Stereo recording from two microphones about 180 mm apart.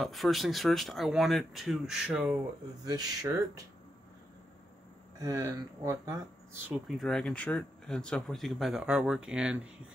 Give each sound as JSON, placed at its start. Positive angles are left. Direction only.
{"t": 0.0, "sound": "speech", "side_deg": 0}
{"t": 2.8, "sound": "speech", "side_deg": -20}
{"t": 5.2, "sound": "speech", "side_deg": -20}
{"t": 7.0, "sound": "speech", "side_deg": 0}